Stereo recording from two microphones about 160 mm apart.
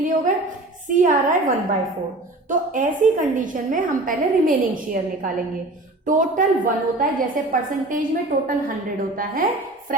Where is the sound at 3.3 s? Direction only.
55° right (ahead or behind).